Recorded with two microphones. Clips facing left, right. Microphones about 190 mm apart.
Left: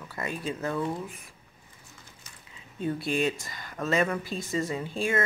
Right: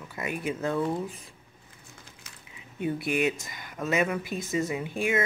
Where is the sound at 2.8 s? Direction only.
15° right (ahead or behind).